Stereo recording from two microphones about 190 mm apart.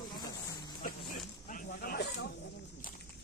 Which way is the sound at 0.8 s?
45° left (ahead or behind).